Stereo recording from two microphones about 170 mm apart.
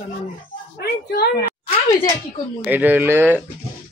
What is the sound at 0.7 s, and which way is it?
Speech, 65° left (ahead or behind).